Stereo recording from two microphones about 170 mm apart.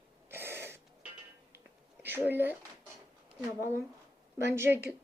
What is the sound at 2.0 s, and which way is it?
Speech, 10° right (ahead or behind).